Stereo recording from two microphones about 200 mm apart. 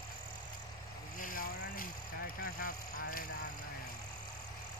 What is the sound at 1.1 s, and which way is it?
Vehicle, 45° left (ahead or behind).